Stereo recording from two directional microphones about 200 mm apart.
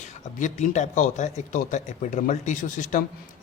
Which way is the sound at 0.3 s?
40° left (ahead or behind).